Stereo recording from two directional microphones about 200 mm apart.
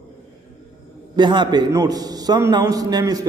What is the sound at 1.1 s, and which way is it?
A man's voice, 25° right (ahead or behind).